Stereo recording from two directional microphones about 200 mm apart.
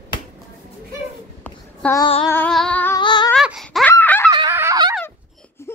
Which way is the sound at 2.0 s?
25° left (ahead or behind).